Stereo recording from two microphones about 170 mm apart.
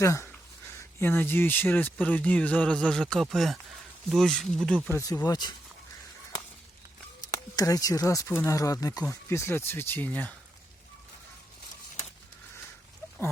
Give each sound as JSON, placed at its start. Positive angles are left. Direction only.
{"t": 0.0, "sound": "speech", "side_deg": 15}
{"t": 4.9, "sound": "speech", "side_deg": 15}
{"t": 7.3, "sound": "speech", "side_deg": 20}